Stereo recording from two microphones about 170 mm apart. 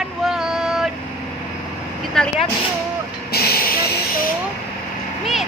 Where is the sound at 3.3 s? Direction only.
65° left (ahead or behind).